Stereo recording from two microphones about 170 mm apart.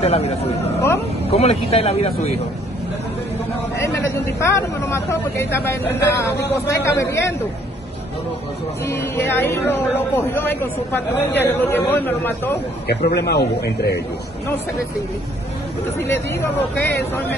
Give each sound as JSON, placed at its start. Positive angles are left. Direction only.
{"t": 0.0, "sound": "speech", "side_deg": 35}
{"t": 3.7, "sound": "speech", "side_deg": 15}
{"t": 8.8, "sound": "speech", "side_deg": 15}
{"t": 12.8, "sound": "a man's voice", "side_deg": 70}
{"t": 16.0, "sound": "speech", "side_deg": 15}